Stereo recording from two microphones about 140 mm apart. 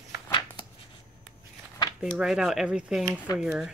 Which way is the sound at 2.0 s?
Centre (ahead or behind).